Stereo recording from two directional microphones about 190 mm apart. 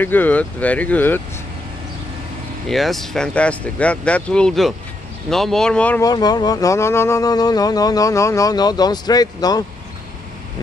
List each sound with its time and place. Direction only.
0.0 s speech: 10° left (ahead or behind)
2.7 s speech: centre (ahead or behind)
6.0 s speech: 20° left (ahead or behind)